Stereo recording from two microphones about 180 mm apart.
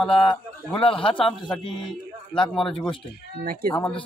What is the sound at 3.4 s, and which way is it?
Speech, 55° right (ahead or behind).